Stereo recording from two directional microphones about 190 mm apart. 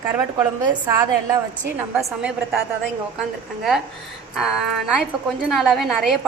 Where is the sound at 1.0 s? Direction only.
15° right (ahead or behind).